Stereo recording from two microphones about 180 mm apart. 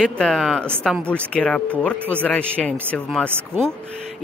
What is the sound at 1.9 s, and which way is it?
Speech, 10° right (ahead or behind).